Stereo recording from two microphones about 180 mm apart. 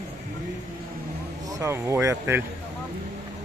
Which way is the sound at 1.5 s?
15° right (ahead or behind).